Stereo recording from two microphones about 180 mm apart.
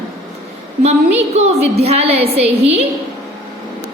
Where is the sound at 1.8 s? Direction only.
35° right (ahead or behind).